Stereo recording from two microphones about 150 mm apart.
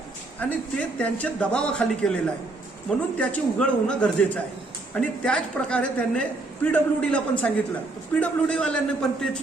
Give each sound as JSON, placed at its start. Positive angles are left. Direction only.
{"t": 0.3, "sound": "a woman's voice", "side_deg": 10}